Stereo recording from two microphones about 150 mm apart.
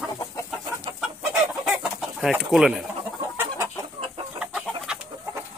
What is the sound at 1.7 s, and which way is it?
Chicken, 5° right (ahead or behind).